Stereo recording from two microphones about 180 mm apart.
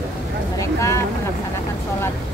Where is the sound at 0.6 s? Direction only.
15° left (ahead or behind).